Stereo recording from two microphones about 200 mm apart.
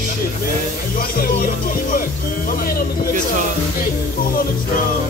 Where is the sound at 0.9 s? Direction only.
45° left (ahead or behind).